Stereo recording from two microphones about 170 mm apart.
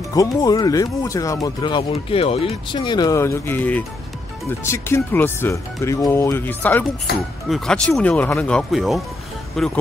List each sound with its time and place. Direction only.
0.1 s speech: 20° left (ahead or behind); by 9.7 s centre (ahead or behind)